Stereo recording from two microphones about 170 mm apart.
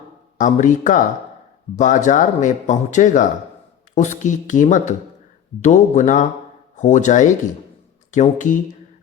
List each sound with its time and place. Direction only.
0.3 s speech: 45° left (ahead or behind)